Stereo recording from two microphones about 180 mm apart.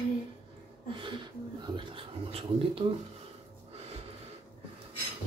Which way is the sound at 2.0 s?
30° right (ahead or behind).